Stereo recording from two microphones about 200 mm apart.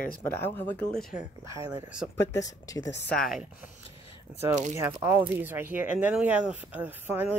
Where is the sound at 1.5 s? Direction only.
10° right (ahead or behind).